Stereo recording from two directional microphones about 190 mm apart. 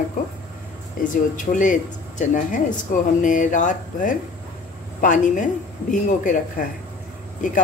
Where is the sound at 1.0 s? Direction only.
45° left (ahead or behind).